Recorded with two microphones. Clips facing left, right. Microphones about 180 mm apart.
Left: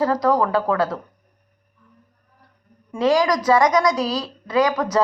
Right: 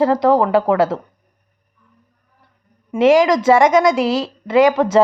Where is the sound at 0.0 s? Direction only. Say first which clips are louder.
Right 5 dB; 25° right (ahead or behind).